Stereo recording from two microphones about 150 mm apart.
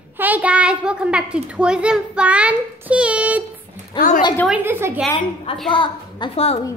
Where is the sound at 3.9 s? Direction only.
60° left (ahead or behind).